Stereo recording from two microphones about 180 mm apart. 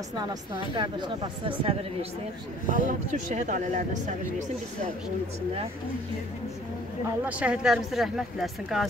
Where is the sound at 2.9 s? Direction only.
45° right (ahead or behind).